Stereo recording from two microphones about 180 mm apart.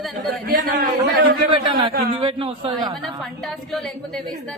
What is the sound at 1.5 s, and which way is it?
A man's voice, 30° right (ahead or behind).